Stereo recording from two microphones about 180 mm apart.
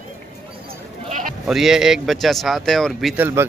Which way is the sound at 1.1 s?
45° right (ahead or behind).